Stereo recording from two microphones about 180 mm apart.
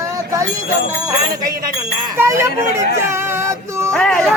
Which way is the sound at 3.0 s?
15° right (ahead or behind).